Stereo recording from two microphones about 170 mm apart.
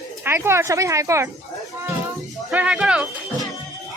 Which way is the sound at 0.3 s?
15° right (ahead or behind).